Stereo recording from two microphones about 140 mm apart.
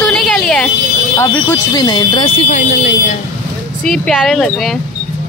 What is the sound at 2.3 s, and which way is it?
Speech, 55° left (ahead or behind).